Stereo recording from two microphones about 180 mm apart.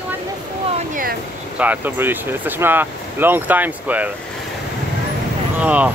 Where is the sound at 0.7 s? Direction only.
45° right (ahead or behind).